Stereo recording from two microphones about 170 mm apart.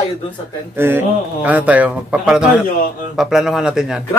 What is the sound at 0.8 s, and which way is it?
A man's voice, 10° right (ahead or behind).